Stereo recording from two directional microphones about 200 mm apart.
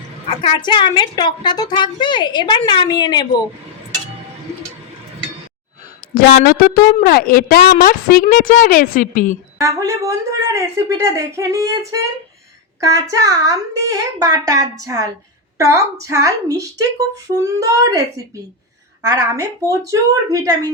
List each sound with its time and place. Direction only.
0.3 s a woman's voice: 25° left (ahead or behind)
6.1 s a woman's voice: 55° left (ahead or behind); by 9.4 s 40° left (ahead or behind)
9.6 s a woman's voice: 15° right (ahead or behind)
19.0 s speech: 15° right (ahead or behind)